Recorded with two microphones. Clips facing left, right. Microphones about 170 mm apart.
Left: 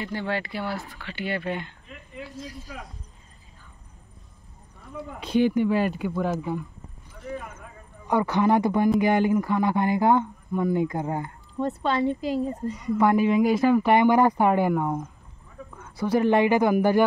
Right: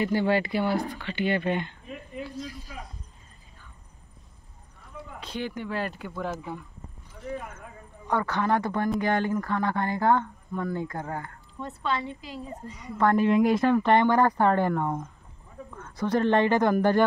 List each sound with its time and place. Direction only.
0.0 s speech: 5° right (ahead or behind)
5.2 s speech: 15° left (ahead or behind)
8.1 s speech: 15° left (ahead or behind)
11.5 s a woman's voice: 35° left (ahead or behind)
12.9 s speech: 10° left (ahead or behind)